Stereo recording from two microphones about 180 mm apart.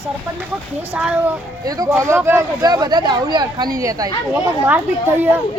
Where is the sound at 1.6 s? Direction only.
20° right (ahead or behind).